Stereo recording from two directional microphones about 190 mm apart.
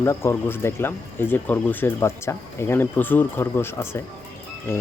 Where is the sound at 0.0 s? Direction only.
15° left (ahead or behind).